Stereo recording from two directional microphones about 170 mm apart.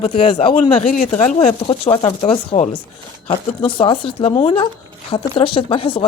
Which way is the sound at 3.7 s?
30° left (ahead or behind).